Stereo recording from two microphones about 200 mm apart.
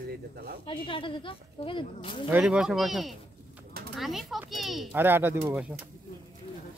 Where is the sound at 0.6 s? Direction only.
25° left (ahead or behind).